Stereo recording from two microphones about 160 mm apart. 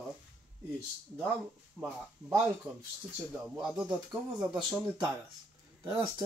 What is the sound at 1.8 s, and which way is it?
Speech, 10° right (ahead or behind).